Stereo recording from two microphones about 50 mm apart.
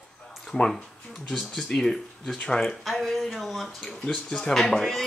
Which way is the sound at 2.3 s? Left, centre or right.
Left.